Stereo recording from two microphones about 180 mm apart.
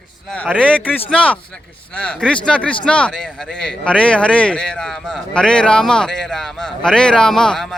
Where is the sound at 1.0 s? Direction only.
5° left (ahead or behind).